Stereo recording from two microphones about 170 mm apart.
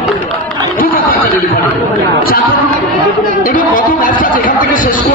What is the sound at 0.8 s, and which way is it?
Snicker, 55° left (ahead or behind).